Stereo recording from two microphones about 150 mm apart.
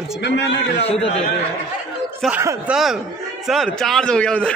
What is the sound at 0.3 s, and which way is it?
Speech, 90° left.